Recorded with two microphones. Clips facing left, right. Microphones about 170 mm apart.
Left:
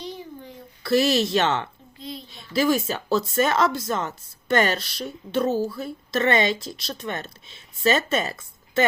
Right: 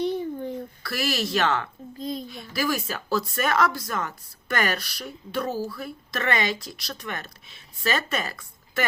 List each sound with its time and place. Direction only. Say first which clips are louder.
0.0 s a sound: right 9 dB; 55° right (ahead or behind)
0.8 s speech: left 10 dB; 25° left (ahead or behind)
2.0 s a child's voice: right 5 dB; 45° right (ahead or behind)
2.3 s speech: left 9 dB; 25° left (ahead or behind)